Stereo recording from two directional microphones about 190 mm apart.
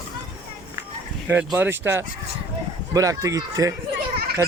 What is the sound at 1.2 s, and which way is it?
Speech, 10° right (ahead or behind).